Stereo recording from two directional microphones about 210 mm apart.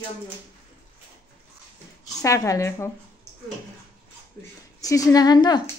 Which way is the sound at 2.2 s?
15° left (ahead or behind).